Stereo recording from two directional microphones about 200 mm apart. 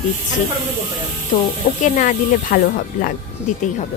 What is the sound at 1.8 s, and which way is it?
Speech, 40° left (ahead or behind).